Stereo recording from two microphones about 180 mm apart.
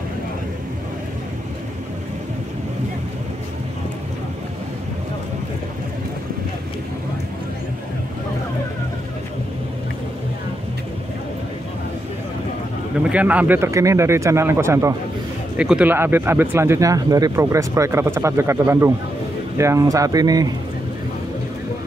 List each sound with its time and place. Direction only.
13.1 s speech: 10° right (ahead or behind)
15.5 s speech: 5° right (ahead or behind); by 20.4 s 20° right (ahead or behind)